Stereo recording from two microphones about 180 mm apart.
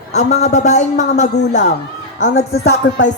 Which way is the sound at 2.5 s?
70° left (ahead or behind).